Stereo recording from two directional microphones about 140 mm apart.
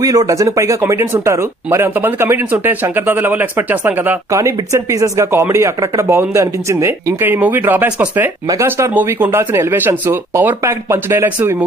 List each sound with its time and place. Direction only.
0.0 s speech: 25° right (ahead or behind)